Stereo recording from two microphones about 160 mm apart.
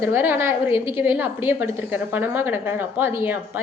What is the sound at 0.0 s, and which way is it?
A woman's voice, 15° right (ahead or behind).